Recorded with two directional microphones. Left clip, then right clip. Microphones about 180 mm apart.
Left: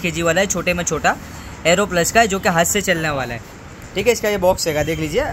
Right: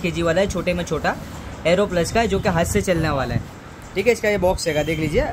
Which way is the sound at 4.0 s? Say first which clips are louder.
Left 1 dB; 5° right (ahead or behind).